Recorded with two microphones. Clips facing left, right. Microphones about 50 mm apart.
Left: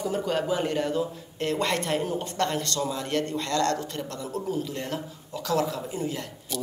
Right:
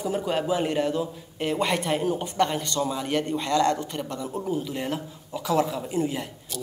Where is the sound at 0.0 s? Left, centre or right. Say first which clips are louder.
Right 1 dB; centre.